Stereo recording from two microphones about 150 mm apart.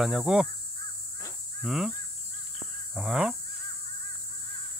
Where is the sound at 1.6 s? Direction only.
Centre (ahead or behind).